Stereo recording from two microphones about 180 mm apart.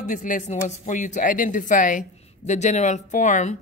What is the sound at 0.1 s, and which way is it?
Speech, 45° left (ahead or behind).